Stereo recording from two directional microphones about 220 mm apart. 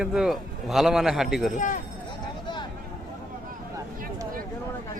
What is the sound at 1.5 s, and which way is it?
Speech, 35° left (ahead or behind).